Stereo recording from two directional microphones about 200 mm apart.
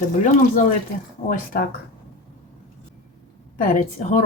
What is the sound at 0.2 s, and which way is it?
Speech, 40° left (ahead or behind).